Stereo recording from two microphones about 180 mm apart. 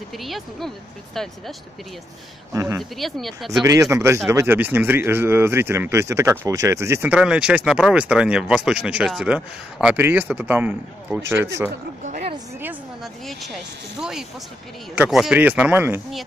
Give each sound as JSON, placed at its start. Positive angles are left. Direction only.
{"t": 0.2, "sound": "speech", "side_deg": 0}
{"t": 2.5, "sound": "speech", "side_deg": -15}
{"t": 2.8, "sound": "speech", "side_deg": 0}
{"t": 3.6, "sound": "speech", "side_deg": -15}
{"t": 12.0, "sound": "a sound", "side_deg": -40}
{"t": 12.5, "sound": "a sound", "side_deg": -10}
{"t": 13.9, "sound": "speech", "side_deg": -5}